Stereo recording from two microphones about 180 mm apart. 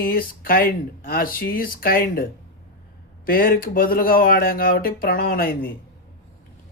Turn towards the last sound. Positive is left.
turn(degrees=55)  # may be behind; listen again after turning